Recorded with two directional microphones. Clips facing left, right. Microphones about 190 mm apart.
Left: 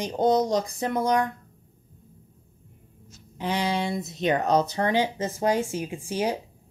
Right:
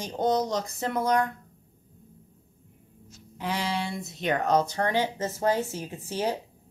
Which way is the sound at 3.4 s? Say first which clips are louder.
Left 3 dB; 20° left (ahead or behind).